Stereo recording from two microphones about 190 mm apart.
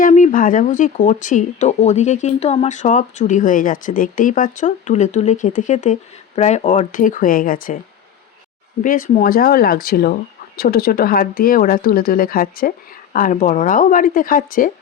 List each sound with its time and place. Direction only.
0.0 s speech: 40° left (ahead or behind)
8.8 s speech: 45° left (ahead or behind)